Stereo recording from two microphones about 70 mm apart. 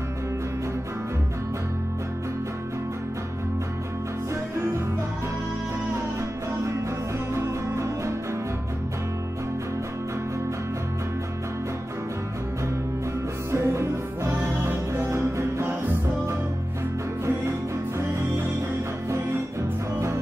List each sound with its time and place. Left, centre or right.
7.3 s music: right
13.5 s music: right
17.9 s music: right